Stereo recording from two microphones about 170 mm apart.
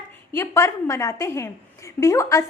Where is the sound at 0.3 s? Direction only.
15° left (ahead or behind).